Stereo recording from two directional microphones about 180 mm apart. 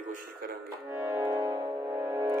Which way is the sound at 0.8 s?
15° right (ahead or behind).